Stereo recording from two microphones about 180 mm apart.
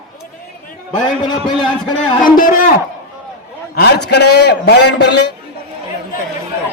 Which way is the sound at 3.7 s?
65° left (ahead or behind).